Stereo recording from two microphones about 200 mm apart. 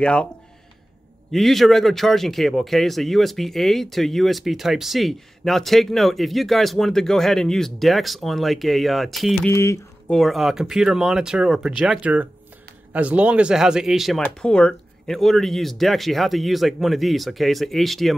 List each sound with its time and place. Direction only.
0.0 s speech: 5° left (ahead or behind)
1.3 s speech: centre (ahead or behind)
9.5 s speech: 15° left (ahead or behind)
10.1 s speech: centre (ahead or behind)